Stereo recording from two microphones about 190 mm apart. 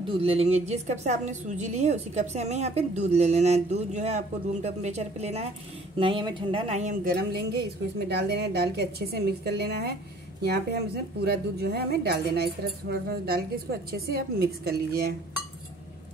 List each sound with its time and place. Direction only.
0.1 s a woman's voice: 30° right (ahead or behind); by 15.1 s 55° right (ahead or behind)